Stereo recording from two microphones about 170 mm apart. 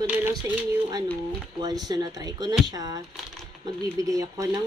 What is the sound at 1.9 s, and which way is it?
A woman's voice, 25° right (ahead or behind).